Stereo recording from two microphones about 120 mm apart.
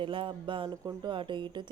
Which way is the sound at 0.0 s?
45° right (ahead or behind).